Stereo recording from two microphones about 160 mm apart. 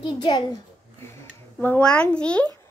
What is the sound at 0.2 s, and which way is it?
Speech, 30° left (ahead or behind).